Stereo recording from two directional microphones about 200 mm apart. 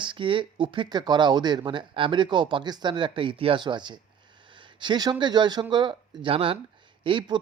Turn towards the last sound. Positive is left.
turn(degrees=-25)  # may be behind; listen again after turning